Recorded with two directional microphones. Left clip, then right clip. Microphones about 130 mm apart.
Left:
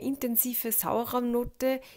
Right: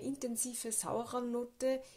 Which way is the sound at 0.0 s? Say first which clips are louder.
Left 8 dB; 30° left (ahead or behind).